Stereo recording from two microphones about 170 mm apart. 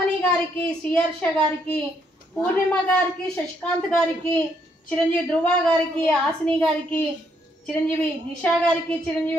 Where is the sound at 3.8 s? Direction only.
10° left (ahead or behind).